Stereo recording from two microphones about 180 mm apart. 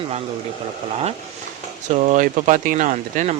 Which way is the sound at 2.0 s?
45° right (ahead or behind).